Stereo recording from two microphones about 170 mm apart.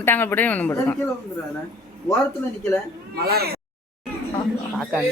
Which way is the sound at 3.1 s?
65° right (ahead or behind).